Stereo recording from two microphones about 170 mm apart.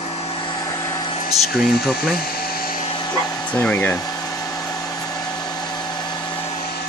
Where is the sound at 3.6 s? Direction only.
10° left (ahead or behind).